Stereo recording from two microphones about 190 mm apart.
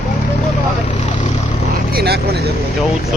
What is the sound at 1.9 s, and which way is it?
Speech, 55° right (ahead or behind).